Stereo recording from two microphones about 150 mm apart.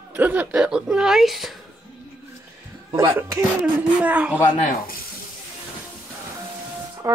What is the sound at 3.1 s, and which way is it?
Speech, 15° right (ahead or behind).